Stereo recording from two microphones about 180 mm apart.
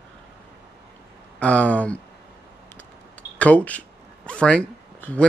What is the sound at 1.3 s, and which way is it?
Speech, 5° left (ahead or behind).